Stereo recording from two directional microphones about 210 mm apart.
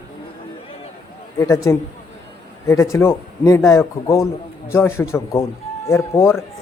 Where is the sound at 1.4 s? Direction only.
15° left (ahead or behind).